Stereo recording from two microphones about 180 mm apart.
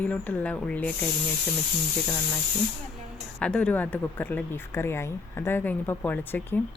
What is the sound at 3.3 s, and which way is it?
Speech, 5° left (ahead or behind).